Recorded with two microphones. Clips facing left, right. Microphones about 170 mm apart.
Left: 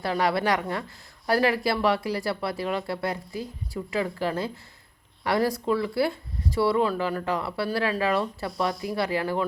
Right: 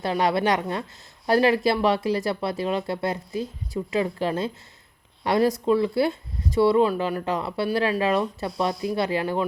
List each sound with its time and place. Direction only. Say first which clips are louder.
0.0 s speech: right 2 dB; 20° right (ahead or behind)